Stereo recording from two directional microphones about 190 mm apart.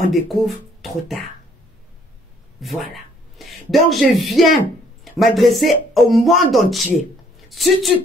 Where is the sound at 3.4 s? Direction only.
Centre (ahead or behind).